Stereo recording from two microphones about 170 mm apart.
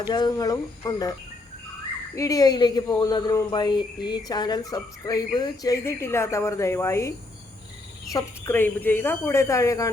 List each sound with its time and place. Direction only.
0.0 s speech: 25° left (ahead or behind)
2.1 s speech: 20° left (ahead or behind)
8.1 s speech: 10° left (ahead or behind)